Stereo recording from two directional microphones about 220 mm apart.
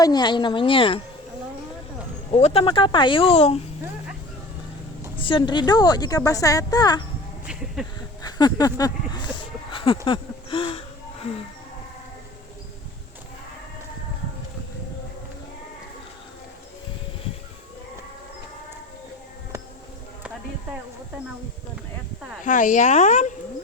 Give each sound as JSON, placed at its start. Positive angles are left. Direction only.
{"t": 0.0, "sound": "speech", "side_deg": 20}
{"t": 2.3, "sound": "speech", "side_deg": 25}
{"t": 5.2, "sound": "speech", "side_deg": 20}
{"t": 7.8, "sound": "speech", "side_deg": 0}
{"t": 8.2, "sound": "speech", "side_deg": 20}
{"t": 10.1, "sound": "a sound", "side_deg": 25}
{"t": 22.4, "sound": "speech", "side_deg": 35}